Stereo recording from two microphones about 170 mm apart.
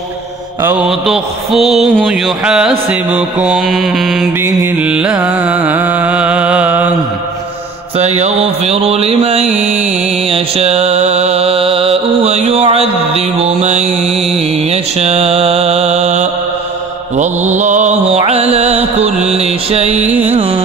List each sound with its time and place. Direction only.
0.6 s mantra: 15° right (ahead or behind)
0.8 s mantra: centre (ahead or behind)
4.4 s carnatic music: 15° right (ahead or behind)
8.0 s music: 40° right (ahead or behind)
9.5 s music: 10° right (ahead or behind)
10.2 s music: 35° right (ahead or behind)
14.5 s mantra: 40° right (ahead or behind)
17.2 s music: 45° right (ahead or behind)
19.3 s mantra: 35° right (ahead or behind)
20.0 s carnatic music: 10° right (ahead or behind)
20.2 s carnatic music: 35° right (ahead or behind)